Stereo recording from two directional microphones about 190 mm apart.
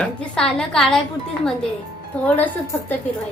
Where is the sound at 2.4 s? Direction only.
10° left (ahead or behind).